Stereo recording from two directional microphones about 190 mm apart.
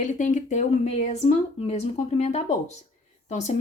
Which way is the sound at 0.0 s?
40° left (ahead or behind).